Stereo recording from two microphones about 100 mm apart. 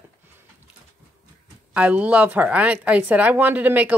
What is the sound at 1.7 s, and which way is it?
A woman's voice, 15° right (ahead or behind).